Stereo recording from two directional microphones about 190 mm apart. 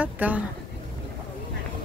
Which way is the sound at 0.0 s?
10° right (ahead or behind).